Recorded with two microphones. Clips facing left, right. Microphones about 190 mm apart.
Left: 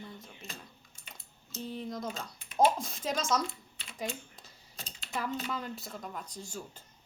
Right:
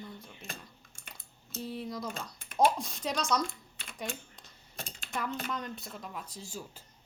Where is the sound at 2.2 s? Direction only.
50° right (ahead or behind).